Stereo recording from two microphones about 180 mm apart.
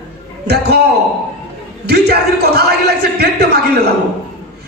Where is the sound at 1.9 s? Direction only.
65° right (ahead or behind).